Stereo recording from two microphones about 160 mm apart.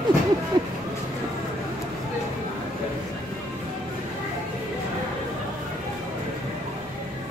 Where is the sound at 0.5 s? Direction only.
25° right (ahead or behind).